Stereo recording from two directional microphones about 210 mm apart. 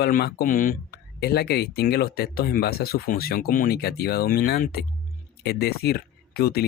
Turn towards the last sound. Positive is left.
turn(degrees=45)  # may be behind; listen again after turning